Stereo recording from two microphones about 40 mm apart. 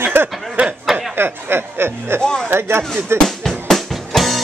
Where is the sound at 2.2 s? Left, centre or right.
Centre.